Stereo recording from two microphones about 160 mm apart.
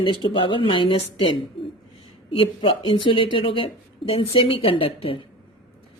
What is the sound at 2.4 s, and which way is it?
A woman's voice, 35° left (ahead or behind).